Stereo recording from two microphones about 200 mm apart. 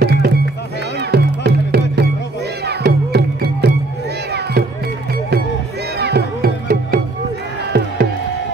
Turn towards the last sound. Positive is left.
turn(degrees=-50)  # may be behind; listen again after turning